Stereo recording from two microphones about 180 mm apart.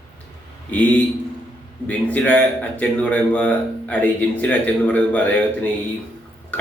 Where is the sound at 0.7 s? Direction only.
10° left (ahead or behind).